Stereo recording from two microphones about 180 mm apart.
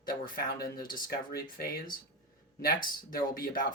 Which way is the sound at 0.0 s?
55° left (ahead or behind).